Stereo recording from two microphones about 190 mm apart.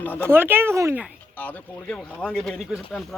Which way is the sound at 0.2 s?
10° right (ahead or behind).